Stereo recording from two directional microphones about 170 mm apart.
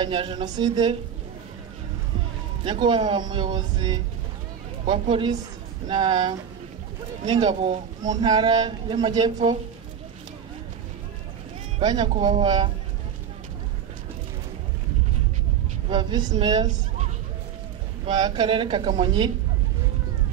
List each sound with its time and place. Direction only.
0.0 s speech: 30° right (ahead or behind)
2.6 s speech: 30° right (ahead or behind)
5.9 s speech: 25° right (ahead or behind)
11.8 s speech: 25° right (ahead or behind)
15.9 s speech: 25° right (ahead or behind)
18.0 s speech: 25° right (ahead or behind)